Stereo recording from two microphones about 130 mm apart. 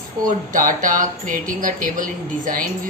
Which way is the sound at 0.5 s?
90° right.